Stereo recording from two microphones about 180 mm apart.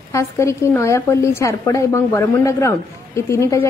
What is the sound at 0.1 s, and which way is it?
Speech, 15° left (ahead or behind).